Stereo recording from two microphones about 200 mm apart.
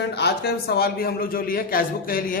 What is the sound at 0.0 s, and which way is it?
A man's voice, 55° left (ahead or behind).